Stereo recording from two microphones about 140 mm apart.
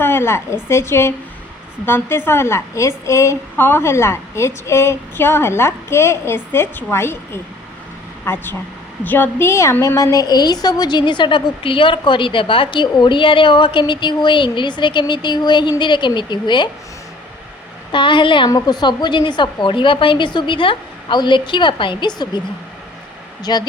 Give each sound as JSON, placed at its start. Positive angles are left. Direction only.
{"t": 0.0, "sound": "a woman's voice", "side_deg": 15}
{"t": 8.2, "sound": "a woman's voice", "side_deg": 15}
{"t": 17.9, "sound": "a woman's voice", "side_deg": 35}
{"t": 23.4, "sound": "speech", "side_deg": 30}